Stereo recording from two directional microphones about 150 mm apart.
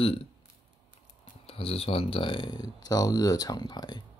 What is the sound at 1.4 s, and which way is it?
Speech, 40° left (ahead or behind).